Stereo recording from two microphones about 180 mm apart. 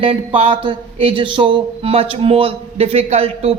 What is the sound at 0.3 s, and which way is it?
Speech, 30° right (ahead or behind).